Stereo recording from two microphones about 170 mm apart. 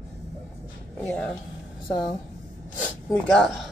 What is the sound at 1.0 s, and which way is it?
Speech, 5° left (ahead or behind).